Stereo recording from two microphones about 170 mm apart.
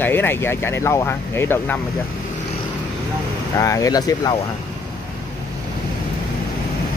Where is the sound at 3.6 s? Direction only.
20° left (ahead or behind).